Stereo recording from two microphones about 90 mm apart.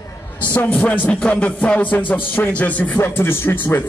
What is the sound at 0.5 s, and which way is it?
Speech, 20° left (ahead or behind).